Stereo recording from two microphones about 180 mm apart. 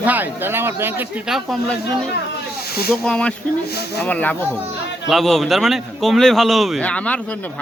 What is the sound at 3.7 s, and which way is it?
Speech, 60° left (ahead or behind).